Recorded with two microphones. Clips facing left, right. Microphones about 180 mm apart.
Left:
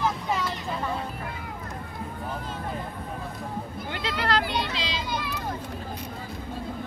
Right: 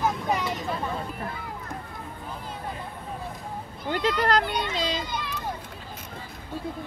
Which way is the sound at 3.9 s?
40° right (ahead or behind).